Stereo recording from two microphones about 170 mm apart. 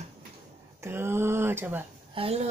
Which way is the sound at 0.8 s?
15° right (ahead or behind).